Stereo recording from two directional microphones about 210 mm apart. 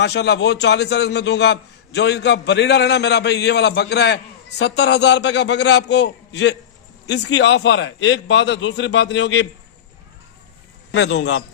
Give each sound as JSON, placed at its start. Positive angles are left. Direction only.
{"t": 0.0, "sound": "a man's voice", "side_deg": 55}
{"t": 10.9, "sound": "a man's voice", "side_deg": 60}